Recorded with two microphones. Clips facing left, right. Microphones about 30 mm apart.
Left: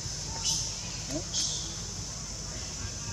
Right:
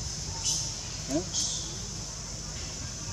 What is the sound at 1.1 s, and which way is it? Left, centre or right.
Speech, centre.